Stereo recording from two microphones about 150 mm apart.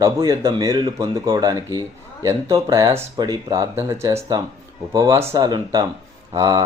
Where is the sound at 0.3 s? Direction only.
25° right (ahead or behind).